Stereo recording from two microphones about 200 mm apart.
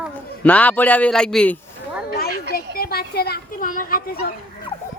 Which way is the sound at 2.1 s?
50° left (ahead or behind).